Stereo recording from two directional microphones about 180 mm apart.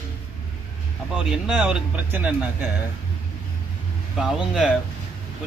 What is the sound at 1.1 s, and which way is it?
Speech, 5° right (ahead or behind).